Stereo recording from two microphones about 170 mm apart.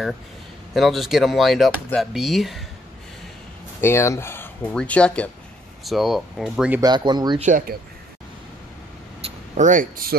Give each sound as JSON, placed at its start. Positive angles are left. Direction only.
{"t": 0.7, "sound": "speech", "side_deg": 0}
{"t": 3.8, "sound": "speech", "side_deg": 15}
{"t": 6.8, "sound": "speech", "side_deg": -25}
{"t": 7.4, "sound": "speech", "side_deg": -50}
{"t": 9.2, "sound": "speech", "side_deg": -45}